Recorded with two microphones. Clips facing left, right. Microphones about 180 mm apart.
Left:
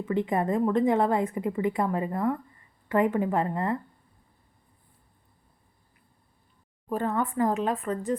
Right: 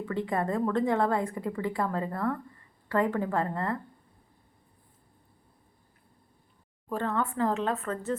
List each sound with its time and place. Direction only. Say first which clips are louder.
0.0 s a woman's voice: left 3 dB; 20° left (ahead or behind)
6.8 s speech: left 2 dB; 15° left (ahead or behind)